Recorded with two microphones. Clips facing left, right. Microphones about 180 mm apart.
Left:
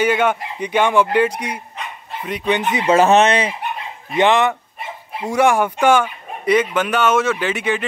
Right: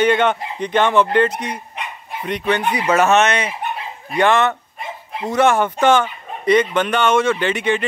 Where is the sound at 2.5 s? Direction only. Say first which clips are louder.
Left 2 dB; 20° left (ahead or behind).